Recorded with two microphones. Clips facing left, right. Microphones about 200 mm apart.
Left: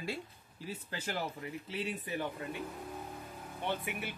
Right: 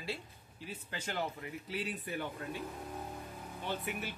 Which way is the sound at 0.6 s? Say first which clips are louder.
Left 2 dB; 40° left (ahead or behind).